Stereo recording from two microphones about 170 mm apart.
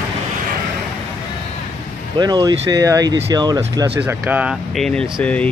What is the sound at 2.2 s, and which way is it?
Speech, 25° right (ahead or behind).